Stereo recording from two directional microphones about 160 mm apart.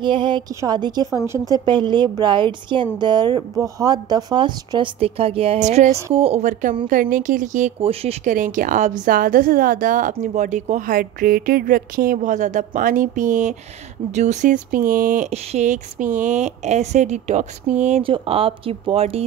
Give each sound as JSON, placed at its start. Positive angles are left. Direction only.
{"t": 0.0, "sound": "a woman's voice", "side_deg": -30}
{"t": 6.9, "sound": "speech", "side_deg": -55}